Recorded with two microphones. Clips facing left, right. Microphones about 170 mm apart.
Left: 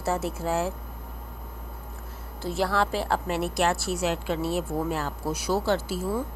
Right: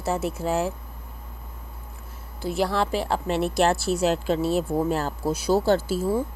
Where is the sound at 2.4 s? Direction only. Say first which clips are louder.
Right 2 dB; 15° right (ahead or behind); by 6.2 s 35° right (ahead or behind).